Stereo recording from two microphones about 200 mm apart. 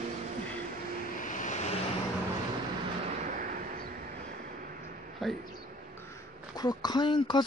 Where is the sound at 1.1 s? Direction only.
40° left (ahead or behind).